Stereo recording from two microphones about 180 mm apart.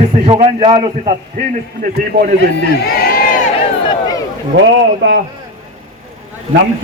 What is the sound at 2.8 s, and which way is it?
Crowd, 60° left (ahead or behind).